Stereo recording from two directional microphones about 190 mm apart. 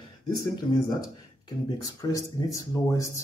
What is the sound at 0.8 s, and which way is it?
Speech, 20° left (ahead or behind).